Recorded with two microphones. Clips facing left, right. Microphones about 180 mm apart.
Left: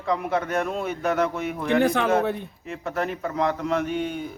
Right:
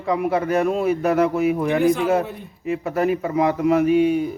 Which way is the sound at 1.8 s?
70° left (ahead or behind).